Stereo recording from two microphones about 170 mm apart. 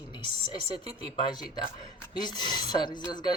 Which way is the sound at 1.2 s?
25° left (ahead or behind).